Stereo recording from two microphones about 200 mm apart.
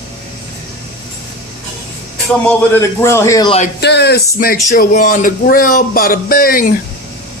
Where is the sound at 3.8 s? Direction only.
60° left (ahead or behind).